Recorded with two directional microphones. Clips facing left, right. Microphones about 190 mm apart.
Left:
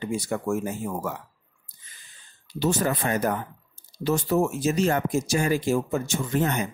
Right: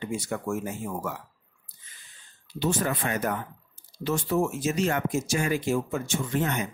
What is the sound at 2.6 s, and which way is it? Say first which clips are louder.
Speech: left 3 dB; 40° left (ahead or behind).